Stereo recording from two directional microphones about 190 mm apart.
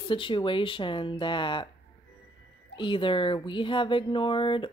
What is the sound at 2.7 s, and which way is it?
Speech, 25° left (ahead or behind).